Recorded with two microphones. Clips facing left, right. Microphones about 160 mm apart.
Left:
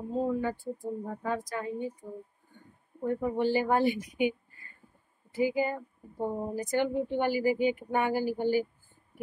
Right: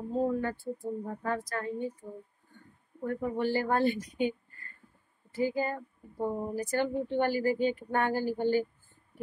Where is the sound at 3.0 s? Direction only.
20° left (ahead or behind).